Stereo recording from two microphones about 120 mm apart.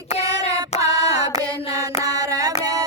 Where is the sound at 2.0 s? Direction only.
30° right (ahead or behind).